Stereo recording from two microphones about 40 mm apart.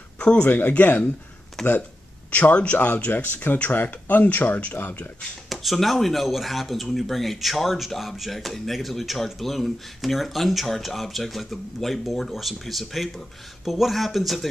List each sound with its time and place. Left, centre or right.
0.4 s speech: left
1.6 s speech: centre
2.3 s speech: left
3.7 s speech: left
5.5 s speech: centre